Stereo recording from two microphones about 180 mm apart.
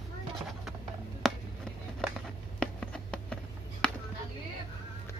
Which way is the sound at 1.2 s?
Centre (ahead or behind).